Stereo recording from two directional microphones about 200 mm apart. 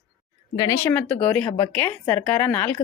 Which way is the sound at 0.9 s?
5° left (ahead or behind).